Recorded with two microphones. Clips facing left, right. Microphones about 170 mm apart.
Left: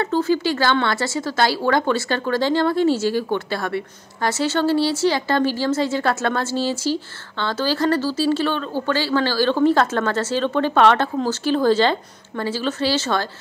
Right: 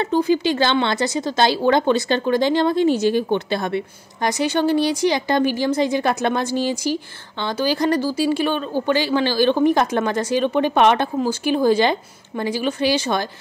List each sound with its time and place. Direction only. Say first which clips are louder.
0.0 s speech: right 1 dB; 15° right (ahead or behind)